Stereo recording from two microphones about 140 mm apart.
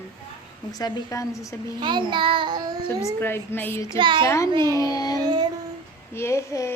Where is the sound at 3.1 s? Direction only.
15° left (ahead or behind).